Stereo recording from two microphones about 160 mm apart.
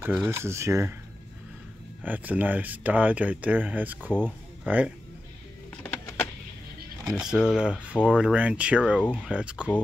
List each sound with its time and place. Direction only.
0.3 s speech: 15° right (ahead or behind)
2.0 s speech: 10° right (ahead or behind)
5.8 s power windows: 10° left (ahead or behind)
7.1 s speech: 5° right (ahead or behind)